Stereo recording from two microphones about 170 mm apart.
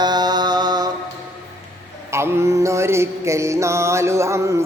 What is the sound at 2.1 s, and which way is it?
Mantra, 15° right (ahead or behind).